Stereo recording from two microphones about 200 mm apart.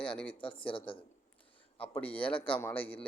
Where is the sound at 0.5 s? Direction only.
25° left (ahead or behind).